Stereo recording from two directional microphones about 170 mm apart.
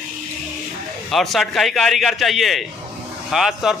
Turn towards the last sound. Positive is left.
turn(degrees=0)  # may be behind; listen again after turning